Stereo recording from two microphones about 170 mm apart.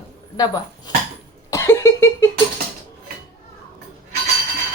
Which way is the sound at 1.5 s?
20° left (ahead or behind).